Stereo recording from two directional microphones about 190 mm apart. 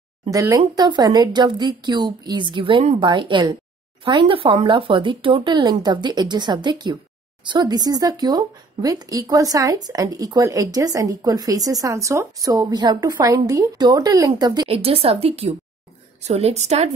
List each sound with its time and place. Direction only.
0.3 s a woman's voice: 20° right (ahead or behind); by 16.9 s 35° right (ahead or behind)